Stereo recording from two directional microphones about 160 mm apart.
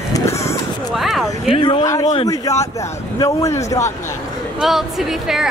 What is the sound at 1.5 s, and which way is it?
Speech, 35° left (ahead or behind).